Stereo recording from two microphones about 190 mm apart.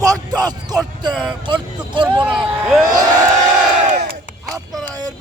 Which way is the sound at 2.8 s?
20° right (ahead or behind).